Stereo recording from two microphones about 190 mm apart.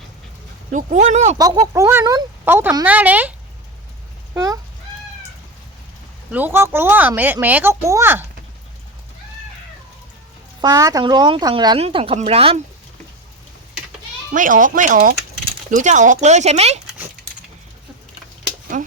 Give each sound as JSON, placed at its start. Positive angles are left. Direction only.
{"t": 0.7, "sound": "speech", "side_deg": -40}
{"t": 1.4, "sound": "speech", "side_deg": -20}
{"t": 6.3, "sound": "speech", "side_deg": -10}
{"t": 10.6, "sound": "a woman's voice", "side_deg": -20}
{"t": 14.3, "sound": "speech", "side_deg": -45}
{"t": 18.7, "sound": "speech", "side_deg": -45}